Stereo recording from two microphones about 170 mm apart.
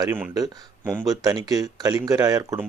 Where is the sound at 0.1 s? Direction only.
15° right (ahead or behind).